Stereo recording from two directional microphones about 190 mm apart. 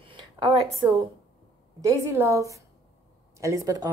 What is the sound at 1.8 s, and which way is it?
A woman's voice, 15° right (ahead or behind).